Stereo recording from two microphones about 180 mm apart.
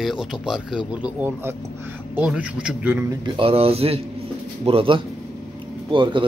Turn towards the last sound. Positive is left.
turn(degrees=-25)  # may be behind; listen again after turning